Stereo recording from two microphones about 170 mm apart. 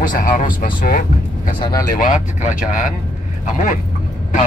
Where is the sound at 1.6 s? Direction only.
25° left (ahead or behind).